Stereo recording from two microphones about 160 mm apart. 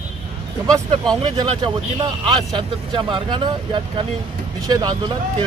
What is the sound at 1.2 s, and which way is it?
Speech, 30° right (ahead or behind).